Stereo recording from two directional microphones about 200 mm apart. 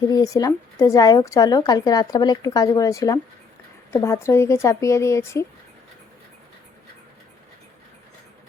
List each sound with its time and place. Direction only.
0.1 s speech: 20° left (ahead or behind)